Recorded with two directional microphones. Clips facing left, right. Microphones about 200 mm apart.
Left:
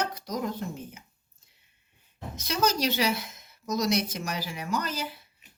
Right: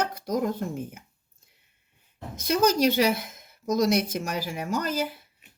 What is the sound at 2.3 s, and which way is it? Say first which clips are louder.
Speech: right 5 dB; 50° right (ahead or behind).